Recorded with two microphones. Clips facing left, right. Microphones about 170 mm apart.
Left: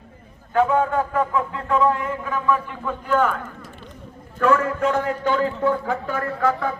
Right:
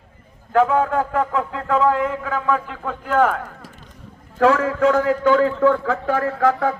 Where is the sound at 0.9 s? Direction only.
80° right.